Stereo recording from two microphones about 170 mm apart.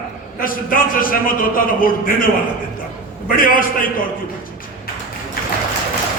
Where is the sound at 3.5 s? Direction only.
55° left (ahead or behind).